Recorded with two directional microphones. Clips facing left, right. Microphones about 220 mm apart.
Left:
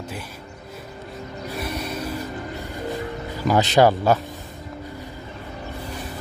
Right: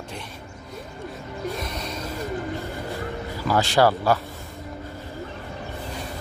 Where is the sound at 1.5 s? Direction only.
10° left (ahead or behind).